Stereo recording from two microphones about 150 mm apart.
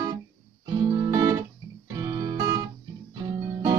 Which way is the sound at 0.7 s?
30° right (ahead or behind).